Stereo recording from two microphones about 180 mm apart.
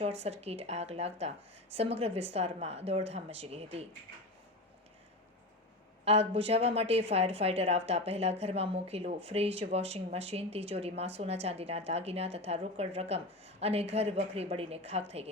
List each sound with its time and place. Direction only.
0.0 s a woman's voice: 35° right (ahead or behind)
6.1 s a woman's voice: 35° right (ahead or behind)